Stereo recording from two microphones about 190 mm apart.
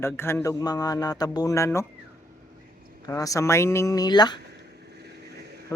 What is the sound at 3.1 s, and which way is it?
Speech, 15° left (ahead or behind).